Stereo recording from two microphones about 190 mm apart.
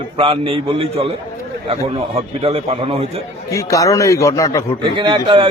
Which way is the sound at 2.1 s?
30° right (ahead or behind).